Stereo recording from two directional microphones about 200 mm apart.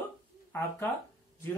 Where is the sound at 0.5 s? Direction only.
10° left (ahead or behind).